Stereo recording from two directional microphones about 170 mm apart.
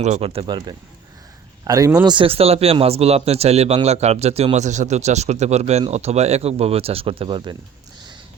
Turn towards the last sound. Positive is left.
turn(degrees=-30)  # may be behind; listen again after turning